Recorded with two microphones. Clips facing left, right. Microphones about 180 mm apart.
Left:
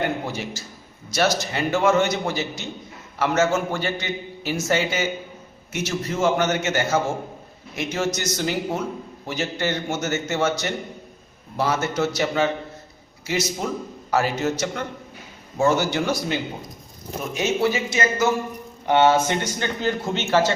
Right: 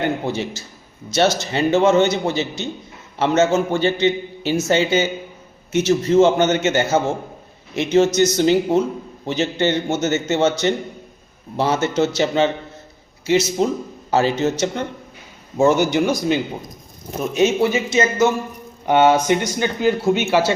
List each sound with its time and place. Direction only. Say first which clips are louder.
0.3 s a man's voice: right 6 dB; 25° right (ahead or behind)
11.5 s a man's voice: right 4 dB; 25° right (ahead or behind)
15.5 s a man's voice: right 5 dB; 20° right (ahead or behind)